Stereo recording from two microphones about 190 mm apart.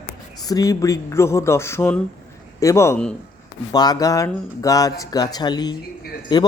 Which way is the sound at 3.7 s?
20° left (ahead or behind).